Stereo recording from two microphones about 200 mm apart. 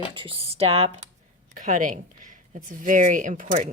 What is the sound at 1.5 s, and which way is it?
Speech, 40° right (ahead or behind).